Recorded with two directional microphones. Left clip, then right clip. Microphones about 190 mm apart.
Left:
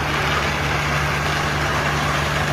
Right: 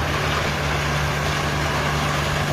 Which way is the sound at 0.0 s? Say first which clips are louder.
Left 2 dB; 25° right (ahead or behind).